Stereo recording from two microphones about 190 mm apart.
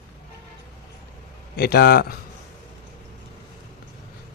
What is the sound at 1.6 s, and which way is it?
Speech, 55° left (ahead or behind).